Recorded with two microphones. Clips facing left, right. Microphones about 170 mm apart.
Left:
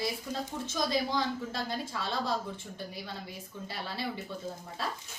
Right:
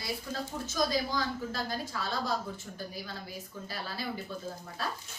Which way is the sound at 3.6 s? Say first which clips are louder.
Left 2 dB; 25° left (ahead or behind).